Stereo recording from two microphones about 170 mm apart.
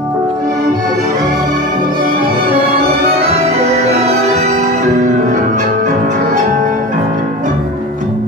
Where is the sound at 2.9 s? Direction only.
35° right (ahead or behind); by 7.0 s 50° right (ahead or behind).